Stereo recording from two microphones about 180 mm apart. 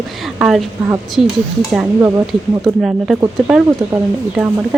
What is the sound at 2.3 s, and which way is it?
Speech, centre (ahead or behind).